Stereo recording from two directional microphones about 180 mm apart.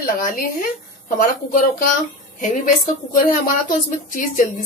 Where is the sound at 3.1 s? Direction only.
45° left (ahead or behind).